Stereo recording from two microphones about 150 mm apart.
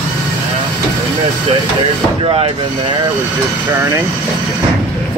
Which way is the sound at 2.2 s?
40° right (ahead or behind).